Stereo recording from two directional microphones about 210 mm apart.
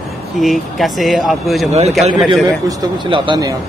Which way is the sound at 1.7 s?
30° right (ahead or behind).